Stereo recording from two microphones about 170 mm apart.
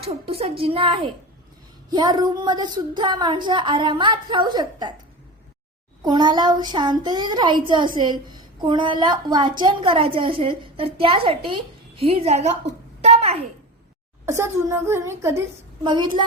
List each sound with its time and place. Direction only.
0.0 s a woman's voice: 35° right (ahead or behind)
6.0 s a woman's voice: 25° right (ahead or behind)
13.0 s a sound: 40° right (ahead or behind)
14.3 s a child's voice: 15° right (ahead or behind)
15.8 s speech: 25° right (ahead or behind)